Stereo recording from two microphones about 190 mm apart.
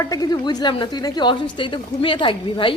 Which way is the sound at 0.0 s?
20° left (ahead or behind).